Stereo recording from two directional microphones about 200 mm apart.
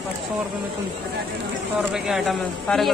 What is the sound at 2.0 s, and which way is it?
Speech, centre (ahead or behind).